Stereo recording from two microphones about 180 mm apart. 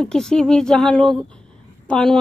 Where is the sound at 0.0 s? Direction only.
5° left (ahead or behind).